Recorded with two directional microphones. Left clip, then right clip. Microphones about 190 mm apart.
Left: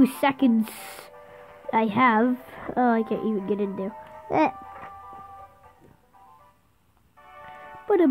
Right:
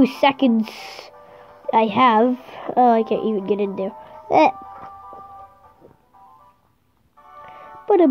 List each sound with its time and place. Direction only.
0.0 s speech: 30° left (ahead or behind)
7.2 s music: 25° left (ahead or behind)